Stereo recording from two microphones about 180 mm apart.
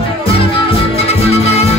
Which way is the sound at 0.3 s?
30° left (ahead or behind).